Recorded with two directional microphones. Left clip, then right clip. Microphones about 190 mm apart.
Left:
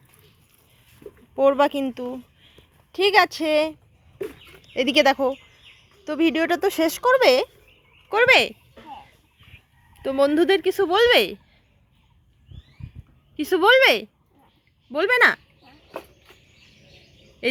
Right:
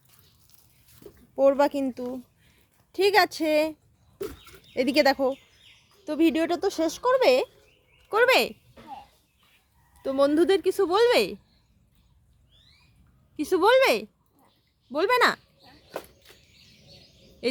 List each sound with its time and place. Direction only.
1.4 s a woman's voice: 5° right (ahead or behind)
6.6 s speech: 35° left (ahead or behind)
6.8 s a woman's voice: 10° left (ahead or behind); by 8.5 s 10° right (ahead or behind)
10.0 s a woman's voice: centre (ahead or behind)
13.3 s a woman's voice: 5° right (ahead or behind)
17.4 s speech: 5° right (ahead or behind)